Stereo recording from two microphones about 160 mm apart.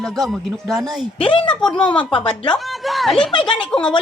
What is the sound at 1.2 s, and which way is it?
Speech, 30° left (ahead or behind).